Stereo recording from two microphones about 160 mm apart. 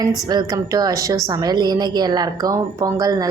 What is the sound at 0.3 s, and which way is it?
A woman's voice, 25° right (ahead or behind).